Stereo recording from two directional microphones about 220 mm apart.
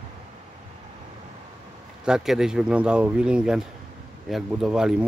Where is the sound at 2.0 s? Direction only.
Centre (ahead or behind).